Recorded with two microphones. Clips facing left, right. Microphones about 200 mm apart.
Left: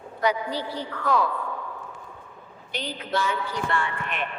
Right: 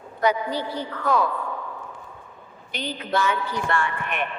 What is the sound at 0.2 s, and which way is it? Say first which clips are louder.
A man's voice: right 3 dB; 50° right (ahead or behind).